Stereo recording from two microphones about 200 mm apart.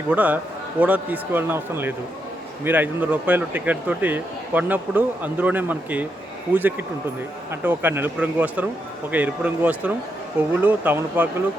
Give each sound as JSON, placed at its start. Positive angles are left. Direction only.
{"t": 0.1, "sound": "speech", "side_deg": -5}